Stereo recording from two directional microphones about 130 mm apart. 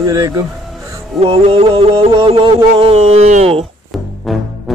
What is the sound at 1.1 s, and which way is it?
Music, 45° right (ahead or behind).